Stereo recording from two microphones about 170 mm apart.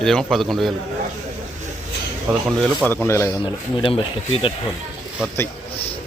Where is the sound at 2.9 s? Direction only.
15° left (ahead or behind).